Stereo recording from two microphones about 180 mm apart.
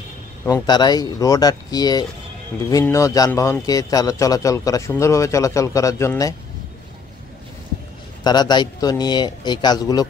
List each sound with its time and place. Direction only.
0.5 s a man's voice: 25° left (ahead or behind)
8.2 s a man's voice: 25° left (ahead or behind)